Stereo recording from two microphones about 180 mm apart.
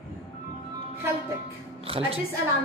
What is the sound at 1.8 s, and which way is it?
Music, 30° right (ahead or behind).